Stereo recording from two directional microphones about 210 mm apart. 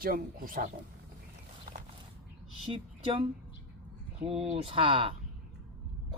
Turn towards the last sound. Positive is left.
turn(degrees=-25)  # may be behind; listen again after turning